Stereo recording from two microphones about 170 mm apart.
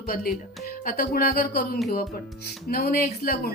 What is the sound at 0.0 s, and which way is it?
A woman's voice, 60° left (ahead or behind).